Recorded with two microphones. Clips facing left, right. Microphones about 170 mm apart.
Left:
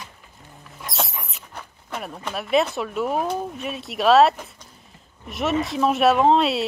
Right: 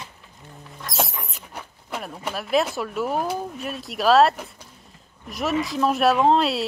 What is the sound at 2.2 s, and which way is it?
Speech, centre (ahead or behind).